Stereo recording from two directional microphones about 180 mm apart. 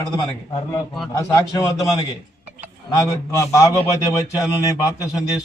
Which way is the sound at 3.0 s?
15° left (ahead or behind).